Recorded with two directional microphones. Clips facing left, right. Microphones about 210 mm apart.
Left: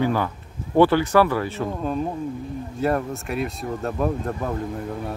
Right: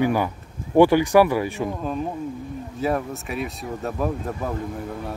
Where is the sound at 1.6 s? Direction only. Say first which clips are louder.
Left 1 dB; centre (ahead or behind).